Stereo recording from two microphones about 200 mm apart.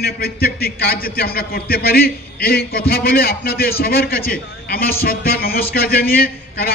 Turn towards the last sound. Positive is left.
turn(degrees=50)  # may be behind; listen again after turning